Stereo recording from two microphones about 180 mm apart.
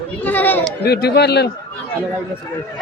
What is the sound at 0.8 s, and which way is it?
Speech, 65° left (ahead or behind).